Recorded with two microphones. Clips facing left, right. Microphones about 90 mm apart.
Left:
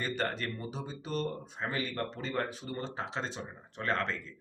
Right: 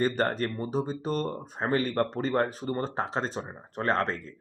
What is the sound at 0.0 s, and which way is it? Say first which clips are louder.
Speech: right 8 dB; 40° right (ahead or behind).